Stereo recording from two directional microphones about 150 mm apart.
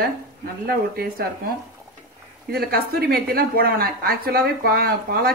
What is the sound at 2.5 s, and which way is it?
Speech, 90° right.